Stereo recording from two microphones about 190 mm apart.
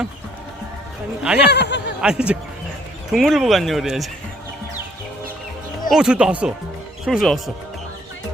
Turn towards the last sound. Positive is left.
turn(degrees=0)  # may be behind; listen again after turning